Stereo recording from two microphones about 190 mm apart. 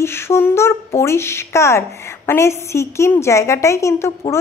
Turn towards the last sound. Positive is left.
turn(degrees=15)  # may be behind; listen again after turning